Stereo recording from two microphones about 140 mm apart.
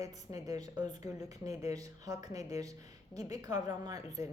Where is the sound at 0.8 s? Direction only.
30° right (ahead or behind).